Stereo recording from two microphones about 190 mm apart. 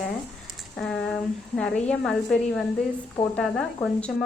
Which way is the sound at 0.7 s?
Centre (ahead or behind).